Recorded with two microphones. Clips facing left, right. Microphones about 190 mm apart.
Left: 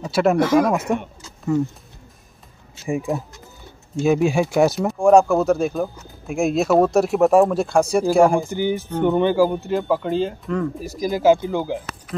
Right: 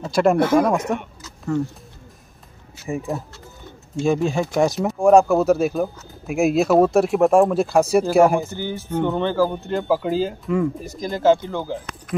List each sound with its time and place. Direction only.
0.1 s speech: 5° left (ahead or behind)
3.1 s speech: centre (ahead or behind)
8.5 s speech: 15° left (ahead or behind); by 10.7 s 5° right (ahead or behind)
10.8 s speech: 5° left (ahead or behind)